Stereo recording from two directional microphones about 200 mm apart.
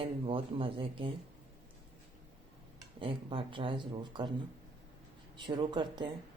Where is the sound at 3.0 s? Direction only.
25° right (ahead or behind).